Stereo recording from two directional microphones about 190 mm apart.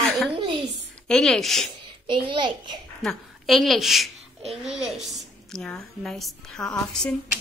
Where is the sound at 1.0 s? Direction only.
5° left (ahead or behind).